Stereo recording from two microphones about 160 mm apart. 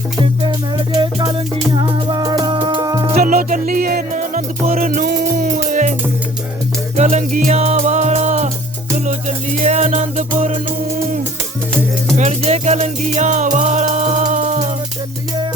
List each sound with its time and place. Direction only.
0.2 s music: 30° right (ahead or behind)
3.2 s music: 60° right (ahead or behind)
12.1 s music: 45° right (ahead or behind)